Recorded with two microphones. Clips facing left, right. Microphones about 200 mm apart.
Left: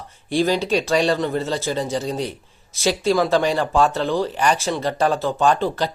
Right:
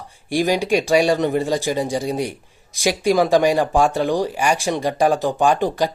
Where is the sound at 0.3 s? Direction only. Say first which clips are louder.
Right 1 dB; 15° right (ahead or behind).